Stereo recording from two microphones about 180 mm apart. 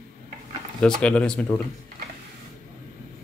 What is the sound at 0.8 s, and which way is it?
Speech, 5° left (ahead or behind).